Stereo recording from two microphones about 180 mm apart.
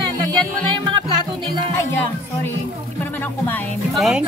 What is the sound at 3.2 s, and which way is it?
Speech, 10° left (ahead or behind).